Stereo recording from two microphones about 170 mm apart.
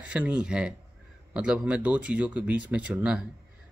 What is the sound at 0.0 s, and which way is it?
Speech, 10° right (ahead or behind).